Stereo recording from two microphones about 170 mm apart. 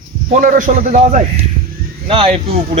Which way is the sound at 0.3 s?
50° right (ahead or behind).